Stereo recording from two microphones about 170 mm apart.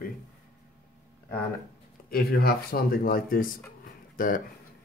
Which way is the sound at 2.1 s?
60° left (ahead or behind).